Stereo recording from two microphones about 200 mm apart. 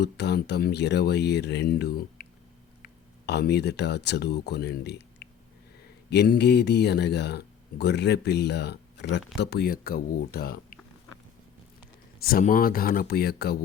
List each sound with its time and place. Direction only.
0.0 s speech: 55° left (ahead or behind)
12.2 s speech: 45° left (ahead or behind)